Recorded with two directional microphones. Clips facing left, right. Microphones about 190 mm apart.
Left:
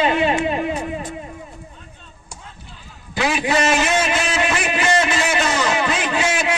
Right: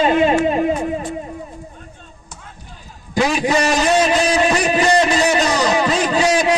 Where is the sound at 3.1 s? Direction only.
40° right (ahead or behind).